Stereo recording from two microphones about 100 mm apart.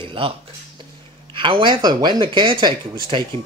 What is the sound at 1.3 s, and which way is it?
Speech, 55° right (ahead or behind).